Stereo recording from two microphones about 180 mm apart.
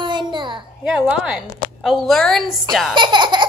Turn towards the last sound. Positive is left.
turn(degrees=-25)  # may be behind; listen again after turning